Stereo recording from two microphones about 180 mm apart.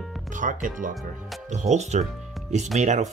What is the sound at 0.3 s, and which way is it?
Speech, 45° right (ahead or behind).